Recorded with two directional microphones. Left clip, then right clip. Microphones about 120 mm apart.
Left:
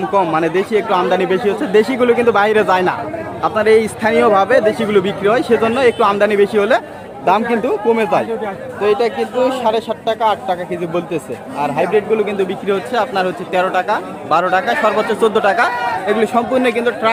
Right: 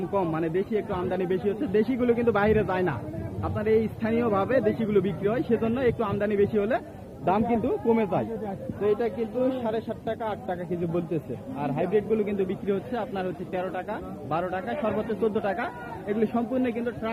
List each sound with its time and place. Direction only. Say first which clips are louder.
0.1 s a man's voice: left 13 dB; 25° left (ahead or behind); by 17.1 s 40° left (ahead or behind)